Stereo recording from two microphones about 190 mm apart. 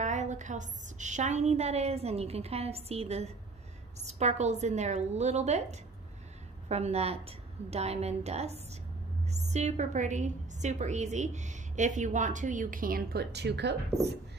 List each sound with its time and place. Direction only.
0.0 s a woman's voice: 40° right (ahead or behind); by 13.7 s 65° right (ahead or behind)